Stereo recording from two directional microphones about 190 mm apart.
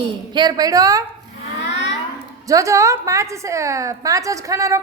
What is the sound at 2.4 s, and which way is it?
A woman's voice, 15° right (ahead or behind).